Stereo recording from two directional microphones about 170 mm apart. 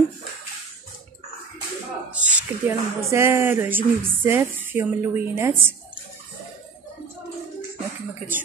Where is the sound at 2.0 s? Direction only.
5° right (ahead or behind).